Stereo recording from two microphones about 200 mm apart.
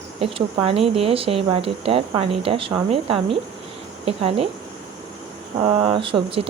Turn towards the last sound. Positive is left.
turn(degrees=-25)  # may be behind; listen again after turning